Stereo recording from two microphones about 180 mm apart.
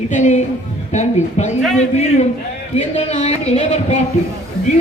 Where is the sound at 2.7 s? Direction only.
35° left (ahead or behind).